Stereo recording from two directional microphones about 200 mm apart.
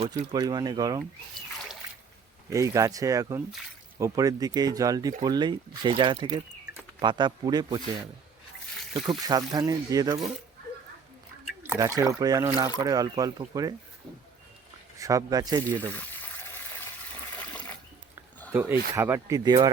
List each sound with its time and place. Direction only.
0.2 s speech: 25° right (ahead or behind)
2.5 s speech: 15° right (ahead or behind)
8.9 s speech: 20° right (ahead or behind)
11.6 s speech: 10° right (ahead or behind)
14.9 s speech: 15° right (ahead or behind)
15.6 s speech: 10° left (ahead or behind)
16.4 s water: 10° left (ahead or behind)
18.5 s speech: 10° right (ahead or behind)